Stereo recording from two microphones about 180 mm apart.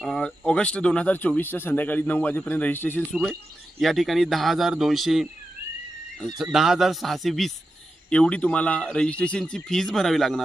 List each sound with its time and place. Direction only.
0.0 s speech: 5° left (ahead or behind)
6.4 s speech: centre (ahead or behind)